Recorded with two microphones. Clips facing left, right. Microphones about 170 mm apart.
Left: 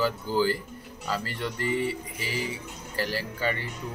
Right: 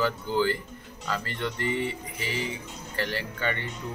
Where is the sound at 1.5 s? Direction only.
40° left (ahead or behind).